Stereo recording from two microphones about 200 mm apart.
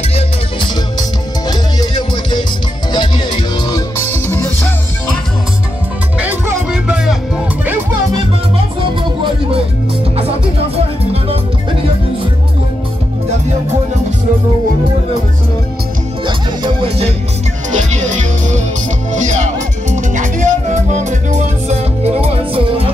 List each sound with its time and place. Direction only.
0.1 s music: 25° left (ahead or behind)
4.3 s music: 10° left (ahead or behind)
6.1 s music: 10° right (ahead or behind)
16.3 s music: 25° right (ahead or behind)
17.6 s music: 35° right (ahead or behind)